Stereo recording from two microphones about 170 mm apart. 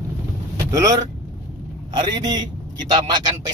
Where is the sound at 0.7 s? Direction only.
20° right (ahead or behind).